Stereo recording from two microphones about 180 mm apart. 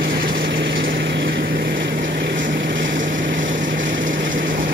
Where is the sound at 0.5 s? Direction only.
90° right.